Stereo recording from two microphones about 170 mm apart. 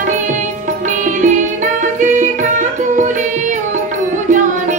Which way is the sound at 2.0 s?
45° right (ahead or behind).